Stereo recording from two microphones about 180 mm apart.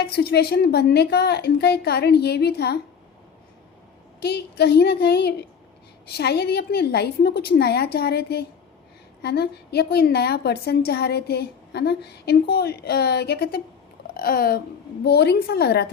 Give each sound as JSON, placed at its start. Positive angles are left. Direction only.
{"t": 0.0, "sound": "a woman's voice", "side_deg": 60}
{"t": 4.2, "sound": "a woman's voice", "side_deg": 65}